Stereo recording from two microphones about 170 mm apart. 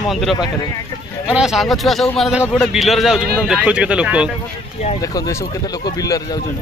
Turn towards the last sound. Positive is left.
turn(degrees=20)  # may be behind; listen again after turning